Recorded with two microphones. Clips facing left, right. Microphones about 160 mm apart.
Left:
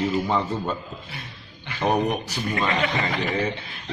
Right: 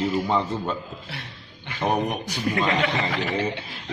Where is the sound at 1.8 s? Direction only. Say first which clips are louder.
Left 2 dB; 10° right (ahead or behind).